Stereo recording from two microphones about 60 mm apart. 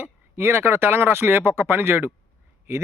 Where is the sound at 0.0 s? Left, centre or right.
Right.